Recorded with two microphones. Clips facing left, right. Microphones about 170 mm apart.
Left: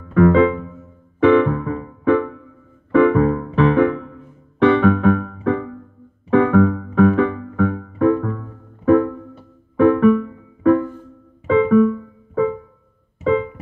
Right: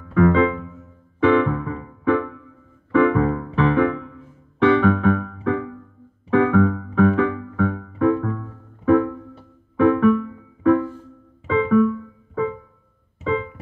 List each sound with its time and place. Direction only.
0.1 s music: 55° left (ahead or behind)
11.4 s keyboard: 50° left (ahead or behind)
13.2 s keyboard: 50° left (ahead or behind)